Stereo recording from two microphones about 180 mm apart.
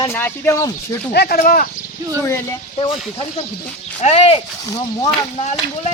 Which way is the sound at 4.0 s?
35° left (ahead or behind).